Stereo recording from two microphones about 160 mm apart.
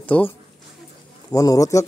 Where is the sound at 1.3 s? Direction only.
20° left (ahead or behind).